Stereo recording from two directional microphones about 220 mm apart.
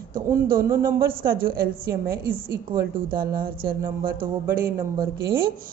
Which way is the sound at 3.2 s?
40° right (ahead or behind).